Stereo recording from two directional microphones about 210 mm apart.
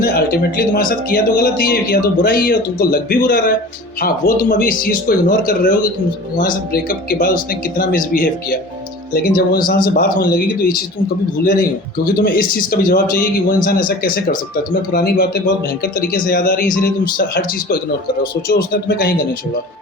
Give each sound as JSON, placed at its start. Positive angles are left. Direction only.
{"t": 0.0, "sound": "speech", "side_deg": 45}